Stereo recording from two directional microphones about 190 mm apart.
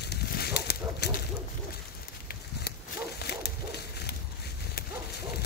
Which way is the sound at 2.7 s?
55° left (ahead or behind).